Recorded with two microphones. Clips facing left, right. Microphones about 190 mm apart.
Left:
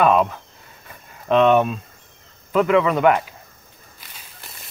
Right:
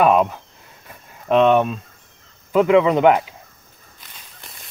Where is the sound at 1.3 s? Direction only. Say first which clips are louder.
Right 1 dB; centre (ahead or behind).